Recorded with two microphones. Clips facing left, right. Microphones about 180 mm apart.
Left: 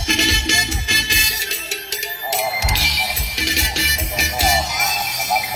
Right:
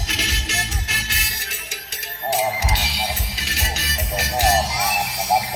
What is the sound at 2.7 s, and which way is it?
Music, 90° left.